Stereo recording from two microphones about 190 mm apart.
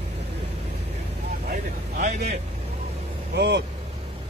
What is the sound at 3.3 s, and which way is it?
Speech, 65° right (ahead or behind).